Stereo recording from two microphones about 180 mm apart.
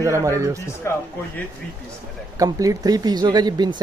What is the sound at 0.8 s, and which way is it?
Speech, 15° left (ahead or behind).